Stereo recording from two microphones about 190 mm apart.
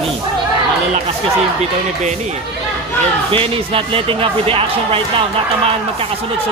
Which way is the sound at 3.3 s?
30° right (ahead or behind).